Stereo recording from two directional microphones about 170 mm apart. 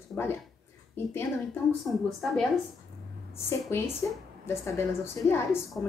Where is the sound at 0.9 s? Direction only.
15° left (ahead or behind).